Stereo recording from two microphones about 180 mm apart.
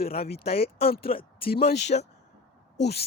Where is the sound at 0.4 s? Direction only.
35° left (ahead or behind).